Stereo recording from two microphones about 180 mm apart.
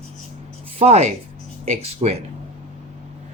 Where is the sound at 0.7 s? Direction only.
35° right (ahead or behind).